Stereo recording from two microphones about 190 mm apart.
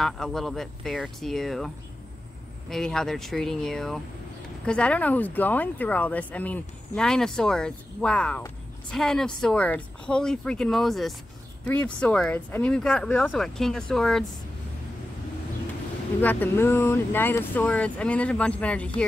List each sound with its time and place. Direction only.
0.0 s speech: centre (ahead or behind)
2.7 s speech: 5° left (ahead or behind)
16.2 s speech: 10° left (ahead or behind)